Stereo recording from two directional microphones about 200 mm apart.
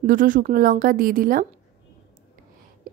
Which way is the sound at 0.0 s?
45° right (ahead or behind).